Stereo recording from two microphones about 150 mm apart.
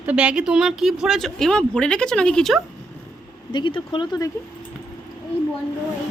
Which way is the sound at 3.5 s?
30° left (ahead or behind).